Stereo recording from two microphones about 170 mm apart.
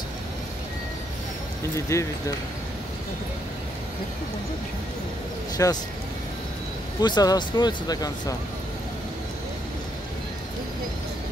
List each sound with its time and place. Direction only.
1.9 s speech: 15° left (ahead or behind)
5.6 s speech: 20° left (ahead or behind)
7.0 s speech: 25° left (ahead or behind)